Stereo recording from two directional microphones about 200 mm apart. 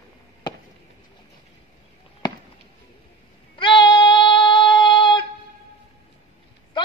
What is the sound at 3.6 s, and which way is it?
Child singing, 25° left (ahead or behind).